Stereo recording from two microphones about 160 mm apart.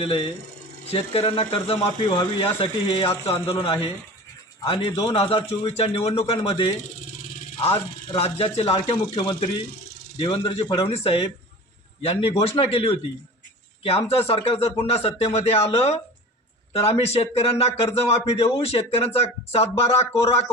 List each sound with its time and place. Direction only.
0.0 s speech: 35° left (ahead or behind)